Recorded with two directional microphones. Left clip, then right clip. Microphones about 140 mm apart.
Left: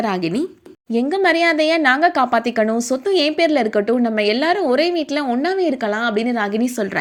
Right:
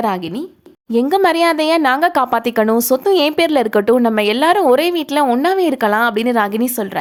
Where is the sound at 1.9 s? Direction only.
35° right (ahead or behind).